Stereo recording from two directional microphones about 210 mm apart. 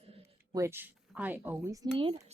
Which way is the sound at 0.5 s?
10° right (ahead or behind).